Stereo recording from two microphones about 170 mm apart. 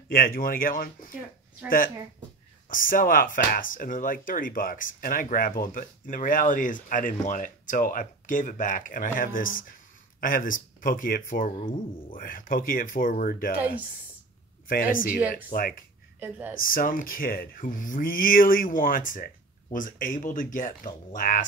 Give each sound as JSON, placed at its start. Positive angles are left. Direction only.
{"t": 0.1, "sound": "speech", "side_deg": 55}
{"t": 2.7, "sound": "speech", "side_deg": 55}
{"t": 14.7, "sound": "speech", "side_deg": 55}
{"t": 16.2, "sound": "speech", "side_deg": -10}
{"t": 16.5, "sound": "speech", "side_deg": 55}